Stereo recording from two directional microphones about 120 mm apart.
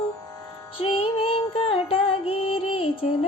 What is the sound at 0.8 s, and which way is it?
Music, 50° left (ahead or behind).